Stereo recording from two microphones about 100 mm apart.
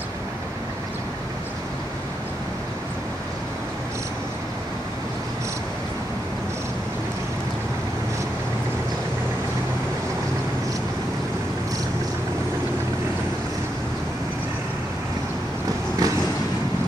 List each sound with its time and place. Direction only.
16.0 s vehicle: 35° right (ahead or behind)